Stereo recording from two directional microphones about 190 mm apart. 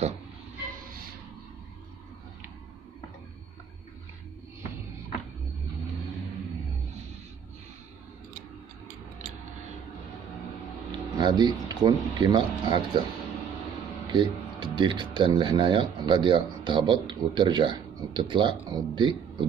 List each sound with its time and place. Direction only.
11.1 s speech: 20° right (ahead or behind)
14.1 s speech: 25° right (ahead or behind)